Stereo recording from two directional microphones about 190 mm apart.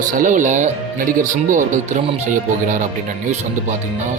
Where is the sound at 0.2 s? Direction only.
40° right (ahead or behind).